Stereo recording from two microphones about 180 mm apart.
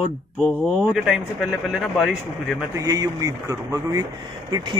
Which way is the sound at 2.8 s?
20° right (ahead or behind).